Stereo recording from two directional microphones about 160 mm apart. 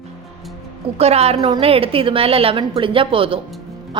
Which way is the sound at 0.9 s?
40° right (ahead or behind).